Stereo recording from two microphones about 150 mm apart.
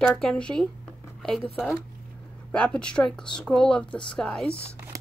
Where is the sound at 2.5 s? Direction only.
10° left (ahead or behind).